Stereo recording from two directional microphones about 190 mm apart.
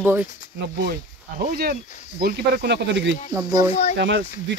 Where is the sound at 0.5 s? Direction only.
60° right (ahead or behind).